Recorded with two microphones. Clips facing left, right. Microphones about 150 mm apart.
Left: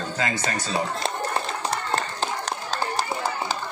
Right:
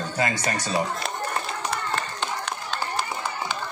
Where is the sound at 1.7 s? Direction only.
35° left (ahead or behind).